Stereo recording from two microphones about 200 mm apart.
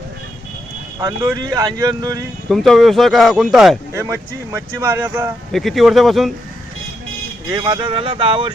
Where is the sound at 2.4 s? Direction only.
Centre (ahead or behind).